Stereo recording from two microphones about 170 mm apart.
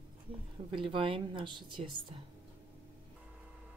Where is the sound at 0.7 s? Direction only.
30° right (ahead or behind).